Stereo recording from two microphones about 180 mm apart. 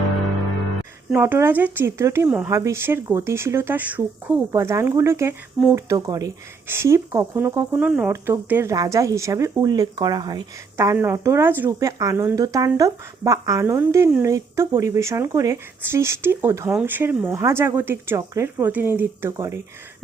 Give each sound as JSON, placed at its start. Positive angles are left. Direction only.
{"t": 1.1, "sound": "speech", "side_deg": -10}